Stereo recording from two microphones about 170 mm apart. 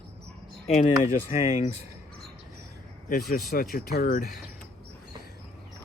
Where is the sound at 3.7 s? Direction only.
60° left (ahead or behind).